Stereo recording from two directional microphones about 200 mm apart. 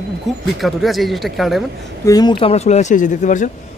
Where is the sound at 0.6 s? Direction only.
Centre (ahead or behind).